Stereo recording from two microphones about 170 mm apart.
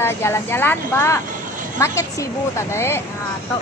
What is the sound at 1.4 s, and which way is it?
Vehicle, 50° right (ahead or behind).